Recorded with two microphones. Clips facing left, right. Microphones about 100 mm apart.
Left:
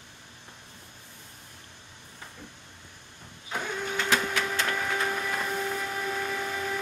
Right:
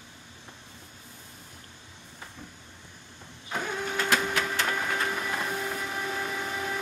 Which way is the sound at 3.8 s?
5° right (ahead or behind).